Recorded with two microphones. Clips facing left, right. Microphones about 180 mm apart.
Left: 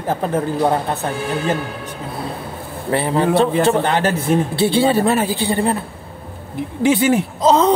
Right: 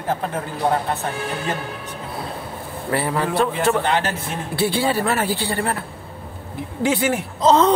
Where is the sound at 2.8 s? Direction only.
25° left (ahead or behind).